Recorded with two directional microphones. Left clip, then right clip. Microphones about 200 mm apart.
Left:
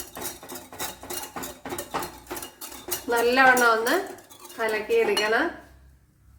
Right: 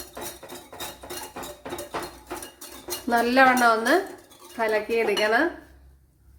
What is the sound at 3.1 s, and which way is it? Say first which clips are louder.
Dishes: even; 40° right (ahead or behind).